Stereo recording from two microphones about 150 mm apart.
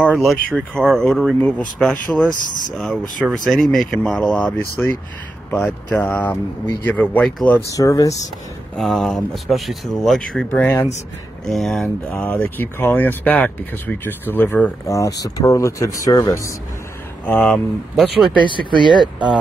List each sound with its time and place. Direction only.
0.0 s speech: 5° left (ahead or behind)
7.5 s speech: 20° left (ahead or behind)
8.7 s speech: centre (ahead or behind); by 16.5 s 20° left (ahead or behind)
17.3 s speech: 5° left (ahead or behind)
18.7 s speech: 30° right (ahead or behind)